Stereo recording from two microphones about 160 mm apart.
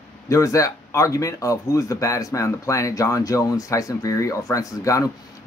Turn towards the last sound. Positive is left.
turn(degrees=20)  # may be behind; listen again after turning